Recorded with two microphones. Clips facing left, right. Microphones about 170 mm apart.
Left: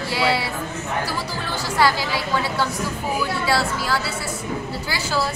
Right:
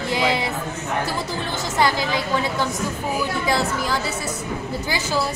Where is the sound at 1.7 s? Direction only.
20° right (ahead or behind).